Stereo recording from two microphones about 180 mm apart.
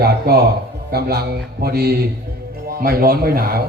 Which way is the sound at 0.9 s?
60° right (ahead or behind).